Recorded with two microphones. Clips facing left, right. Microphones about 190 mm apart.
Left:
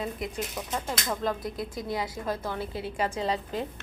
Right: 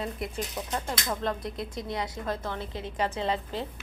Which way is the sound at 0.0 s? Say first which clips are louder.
Left 1 dB; 5° left (ahead or behind).